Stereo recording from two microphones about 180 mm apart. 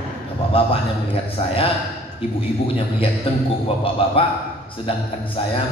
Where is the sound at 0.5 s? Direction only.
30° left (ahead or behind).